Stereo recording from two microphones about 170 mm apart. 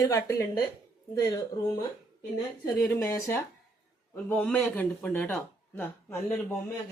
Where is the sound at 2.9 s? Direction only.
15° left (ahead or behind).